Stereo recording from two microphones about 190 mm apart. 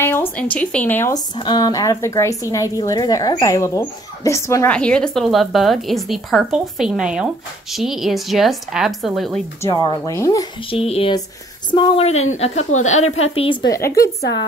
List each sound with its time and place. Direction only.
0.0 s speech: 10° left (ahead or behind)
9.6 s speech: 20° left (ahead or behind)
10.9 s a woman's voice: 30° left (ahead or behind)
13.7 s speech: 15° left (ahead or behind)